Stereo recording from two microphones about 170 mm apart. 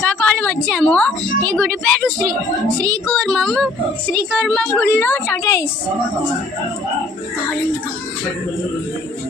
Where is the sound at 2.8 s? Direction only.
20° right (ahead or behind).